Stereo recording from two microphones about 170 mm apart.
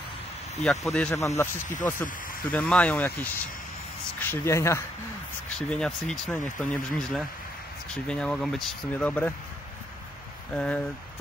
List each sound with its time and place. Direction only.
0.7 s speech: 5° left (ahead or behind)
2.5 s speech: 10° left (ahead or behind)
5.7 s speech: 5° left (ahead or behind)
10.5 s speech: 5° left (ahead or behind)